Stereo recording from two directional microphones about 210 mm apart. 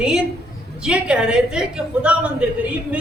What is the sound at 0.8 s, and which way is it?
A man's voice, 5° right (ahead or behind).